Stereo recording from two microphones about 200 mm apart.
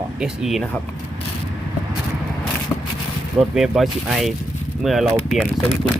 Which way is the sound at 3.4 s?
Centre (ahead or behind).